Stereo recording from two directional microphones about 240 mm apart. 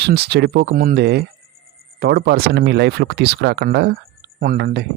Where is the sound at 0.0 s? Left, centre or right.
Right.